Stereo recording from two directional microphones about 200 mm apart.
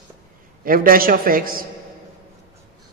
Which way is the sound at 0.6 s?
45° right (ahead or behind).